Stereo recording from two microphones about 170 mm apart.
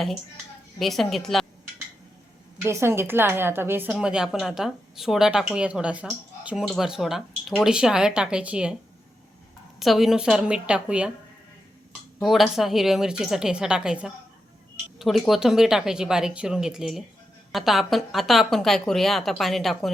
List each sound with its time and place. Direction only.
0.8 s a woman's voice: centre (ahead or behind)
2.6 s a woman's voice: 15° right (ahead or behind)
9.8 s a woman's voice: centre (ahead or behind)
12.2 s a woman's voice: centre (ahead or behind)